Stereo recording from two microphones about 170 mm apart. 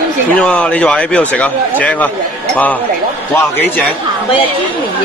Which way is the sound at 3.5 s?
10° left (ahead or behind).